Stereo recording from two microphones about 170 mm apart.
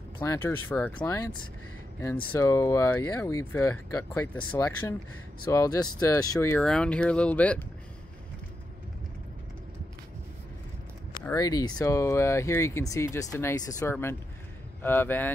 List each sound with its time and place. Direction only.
0.2 s speech: 15° left (ahead or behind)
2.3 s speech: 15° left (ahead or behind)
6.5 s speech: 5° left (ahead or behind)
11.2 s speech: 20° left (ahead or behind)